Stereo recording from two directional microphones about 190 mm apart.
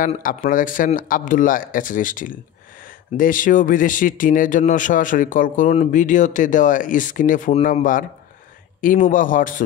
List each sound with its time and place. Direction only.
0.2 s speech: 45° left (ahead or behind)